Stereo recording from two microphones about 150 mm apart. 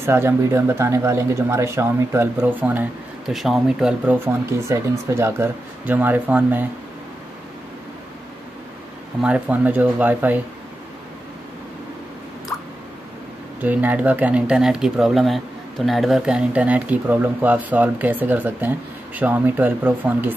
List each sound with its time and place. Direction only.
0.0 s speech: 15° right (ahead or behind)
9.2 s speech: 10° right (ahead or behind)
13.6 s speech: 10° right (ahead or behind)